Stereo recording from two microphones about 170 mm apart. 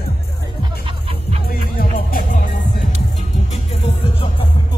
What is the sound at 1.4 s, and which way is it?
Music, 55° left (ahead or behind).